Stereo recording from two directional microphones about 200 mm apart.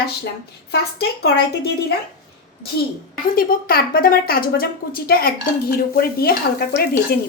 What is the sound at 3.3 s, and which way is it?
Speech, 45° left (ahead or behind).